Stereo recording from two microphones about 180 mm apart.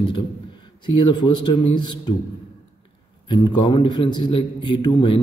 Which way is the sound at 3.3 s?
25° left (ahead or behind).